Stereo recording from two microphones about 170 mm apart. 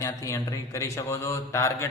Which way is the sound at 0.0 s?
20° left (ahead or behind).